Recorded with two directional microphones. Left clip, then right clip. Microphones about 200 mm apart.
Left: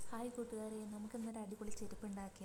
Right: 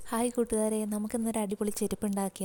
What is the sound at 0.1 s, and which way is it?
A woman's voice, 50° right (ahead or behind).